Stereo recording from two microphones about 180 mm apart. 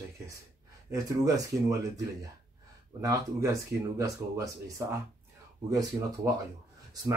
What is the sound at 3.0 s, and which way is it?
Speech, 20° right (ahead or behind).